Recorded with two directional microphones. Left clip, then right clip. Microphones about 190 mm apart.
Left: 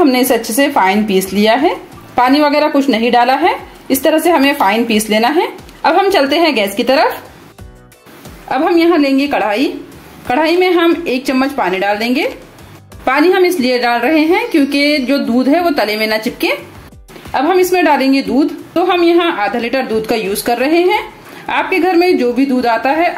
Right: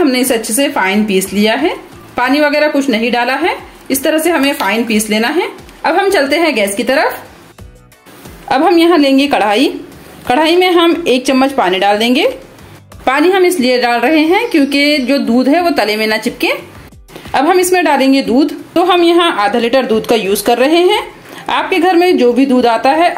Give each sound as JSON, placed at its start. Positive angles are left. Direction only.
{"t": 0.0, "sound": "a woman's voice", "side_deg": 0}
{"t": 8.5, "sound": "a woman's voice", "side_deg": -20}
{"t": 17.3, "sound": "a woman's voice", "side_deg": -20}